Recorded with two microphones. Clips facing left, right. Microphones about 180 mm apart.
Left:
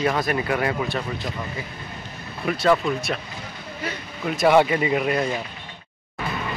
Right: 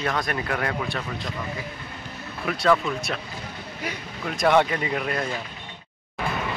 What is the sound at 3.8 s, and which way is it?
Speech, 10° right (ahead or behind).